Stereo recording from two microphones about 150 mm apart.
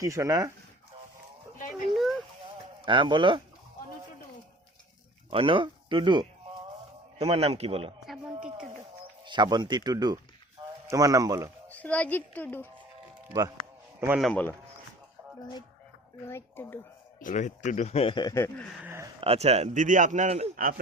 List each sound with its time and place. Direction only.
0.0 s speech: 20° right (ahead or behind)
1.7 s a sound: centre (ahead or behind)
2.8 s a man's voice: 35° right (ahead or behind)
5.3 s speech: 35° right (ahead or behind)
7.2 s a man's voice: 40° right (ahead or behind)
9.2 s speech: 30° right (ahead or behind)
11.7 s speech: 10° left (ahead or behind)
14.2 s speech: 5° left (ahead or behind)
16.2 s speech: 15° left (ahead or behind)
17.2 s a man's voice: 55° left (ahead or behind); by 18.3 s 30° left (ahead or behind)
18.3 s speech: 20° left (ahead or behind)
19.2 s speech: 45° right (ahead or behind)